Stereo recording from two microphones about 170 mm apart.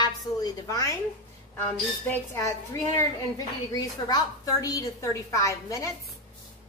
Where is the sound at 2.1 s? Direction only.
15° left (ahead or behind).